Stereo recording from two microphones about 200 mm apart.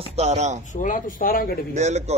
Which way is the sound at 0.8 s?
45° left (ahead or behind).